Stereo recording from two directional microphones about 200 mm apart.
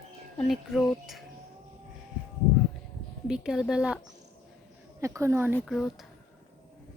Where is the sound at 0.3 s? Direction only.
Centre (ahead or behind).